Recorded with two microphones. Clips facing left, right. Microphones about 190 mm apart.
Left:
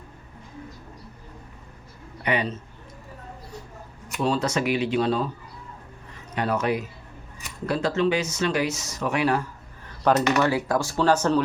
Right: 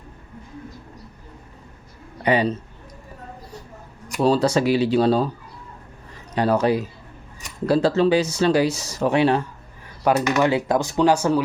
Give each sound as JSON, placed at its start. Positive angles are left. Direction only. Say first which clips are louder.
{"t": 2.2, "sound": "speech", "louder": "right 6 dB", "side_deg": -35}
{"t": 4.2, "sound": "speech", "louder": "right 6 dB", "side_deg": -35}
{"t": 6.3, "sound": "speech", "louder": "right 6 dB", "side_deg": -35}
{"t": 9.8, "sound": "speech", "louder": "right 1 dB", "side_deg": -10}